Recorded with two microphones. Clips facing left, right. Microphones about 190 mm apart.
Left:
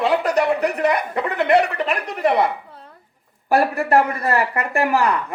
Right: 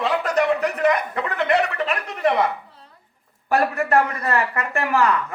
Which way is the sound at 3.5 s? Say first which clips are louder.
Left 2 dB; 35° left (ahead or behind).